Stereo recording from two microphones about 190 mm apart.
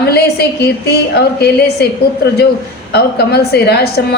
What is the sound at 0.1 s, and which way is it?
A woman's voice, 60° left (ahead or behind).